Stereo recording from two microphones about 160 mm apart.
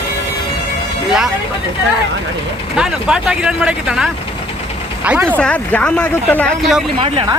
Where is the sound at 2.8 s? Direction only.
5° right (ahead or behind).